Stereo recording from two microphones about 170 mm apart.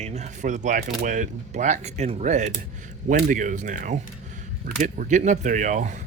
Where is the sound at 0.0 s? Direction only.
40° right (ahead or behind).